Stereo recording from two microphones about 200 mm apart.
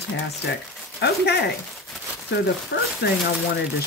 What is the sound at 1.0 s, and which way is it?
Speech, 55° left (ahead or behind).